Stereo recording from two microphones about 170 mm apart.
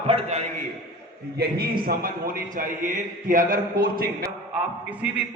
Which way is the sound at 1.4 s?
65° right (ahead or behind).